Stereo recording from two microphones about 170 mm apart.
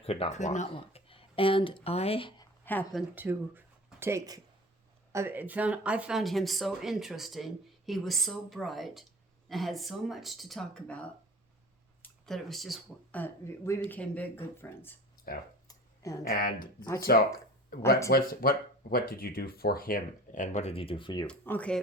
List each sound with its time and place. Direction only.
0.0 s speech: 35° left (ahead or behind)
3.2 s speech: 10° right (ahead or behind); by 14.9 s 10° left (ahead or behind)
15.3 s speech: 60° left (ahead or behind)
15.6 s a sound: 20° left (ahead or behind)
16.3 s speech: 60° left (ahead or behind)
16.8 s speech: 15° left (ahead or behind)
17.7 s speech: 60° left (ahead or behind); by 21.2 s 25° left (ahead or behind)
21.2 s speech: 10° left (ahead or behind)